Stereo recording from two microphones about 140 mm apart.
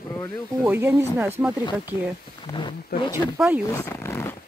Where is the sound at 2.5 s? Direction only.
35° left (ahead or behind).